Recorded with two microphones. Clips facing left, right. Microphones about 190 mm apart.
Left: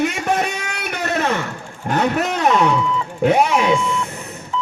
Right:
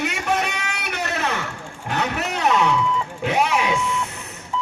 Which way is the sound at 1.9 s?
45° left (ahead or behind).